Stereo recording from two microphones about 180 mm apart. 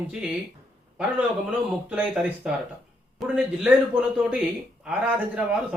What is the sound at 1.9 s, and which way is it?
A man's voice, 5° right (ahead or behind).